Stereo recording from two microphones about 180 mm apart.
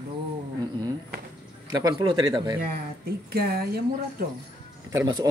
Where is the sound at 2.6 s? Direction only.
60° right (ahead or behind).